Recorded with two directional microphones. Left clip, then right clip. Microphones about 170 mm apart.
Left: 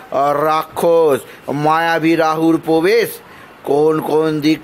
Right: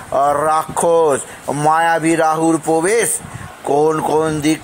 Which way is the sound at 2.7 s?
5° left (ahead or behind).